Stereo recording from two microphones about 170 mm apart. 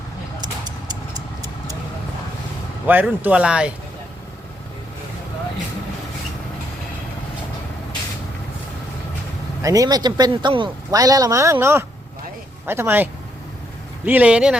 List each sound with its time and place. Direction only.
0.4 s vehicle: 25° right (ahead or behind)
2.8 s speech: 10° right (ahead or behind)
9.6 s speech: 20° right (ahead or behind)